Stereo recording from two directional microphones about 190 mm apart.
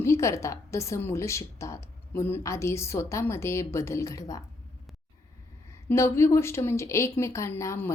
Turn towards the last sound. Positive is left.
turn(degrees=15)  # may be behind; listen again after turning